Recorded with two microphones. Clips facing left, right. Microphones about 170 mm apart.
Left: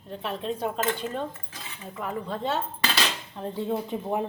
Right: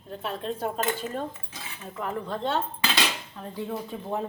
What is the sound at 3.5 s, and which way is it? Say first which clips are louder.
Speech: left 3 dB; 25° left (ahead or behind).